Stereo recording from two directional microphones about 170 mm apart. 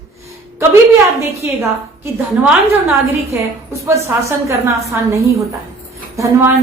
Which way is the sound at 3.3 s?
15° right (ahead or behind).